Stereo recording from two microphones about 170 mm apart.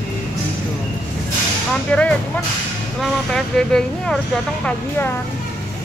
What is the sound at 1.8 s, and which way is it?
Speech, 5° left (ahead or behind).